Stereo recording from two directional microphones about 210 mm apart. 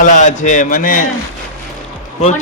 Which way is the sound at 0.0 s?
35° left (ahead or behind).